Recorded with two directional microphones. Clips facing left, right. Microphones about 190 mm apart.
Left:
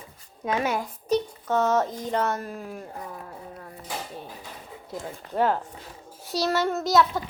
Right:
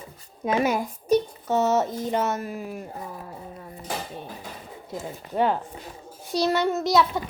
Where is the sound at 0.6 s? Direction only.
10° right (ahead or behind).